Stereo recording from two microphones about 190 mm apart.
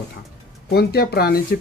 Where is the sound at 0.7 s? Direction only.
55° left (ahead or behind).